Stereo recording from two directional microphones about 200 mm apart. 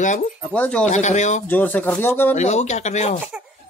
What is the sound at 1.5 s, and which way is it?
Speech, 10° left (ahead or behind).